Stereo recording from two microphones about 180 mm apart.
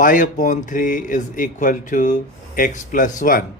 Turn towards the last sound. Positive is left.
turn(degrees=50)  # may be behind; listen again after turning